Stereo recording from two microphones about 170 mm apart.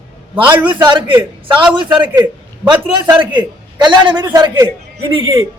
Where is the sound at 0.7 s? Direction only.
30° right (ahead or behind).